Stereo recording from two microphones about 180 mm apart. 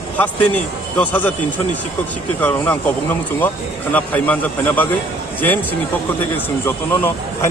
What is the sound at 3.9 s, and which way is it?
Speech, 10° left (ahead or behind).